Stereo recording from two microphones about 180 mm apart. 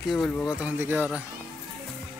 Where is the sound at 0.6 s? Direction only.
10° right (ahead or behind).